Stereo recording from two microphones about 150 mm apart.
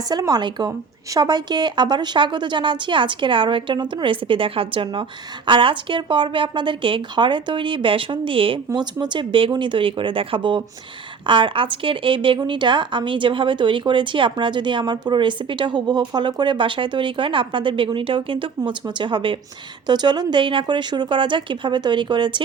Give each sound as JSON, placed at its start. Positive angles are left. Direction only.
{"t": 0.1, "sound": "a woman's voice", "side_deg": -25}